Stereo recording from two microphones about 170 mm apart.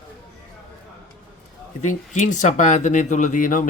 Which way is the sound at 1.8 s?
45° left (ahead or behind).